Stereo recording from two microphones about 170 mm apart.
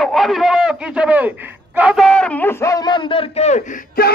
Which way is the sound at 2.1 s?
5° left (ahead or behind).